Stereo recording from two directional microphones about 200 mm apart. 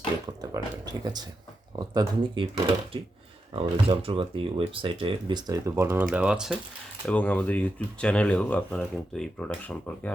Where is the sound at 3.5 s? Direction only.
25° right (ahead or behind); by 6.5 s 5° right (ahead or behind).